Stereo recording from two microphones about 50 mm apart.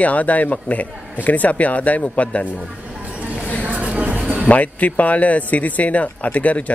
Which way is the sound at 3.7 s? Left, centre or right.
Right.